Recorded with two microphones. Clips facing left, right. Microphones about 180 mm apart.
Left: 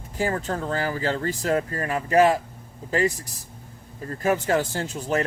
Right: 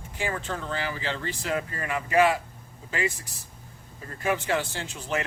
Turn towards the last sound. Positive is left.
turn(degrees=40)  # may be behind; listen again after turning